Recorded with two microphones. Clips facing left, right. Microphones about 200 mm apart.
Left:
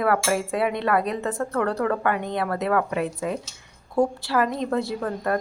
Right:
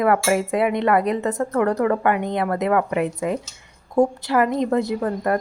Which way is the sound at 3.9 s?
20° right (ahead or behind).